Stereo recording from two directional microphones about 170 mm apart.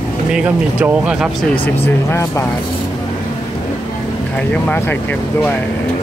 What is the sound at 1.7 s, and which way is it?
Speech, 15° left (ahead or behind).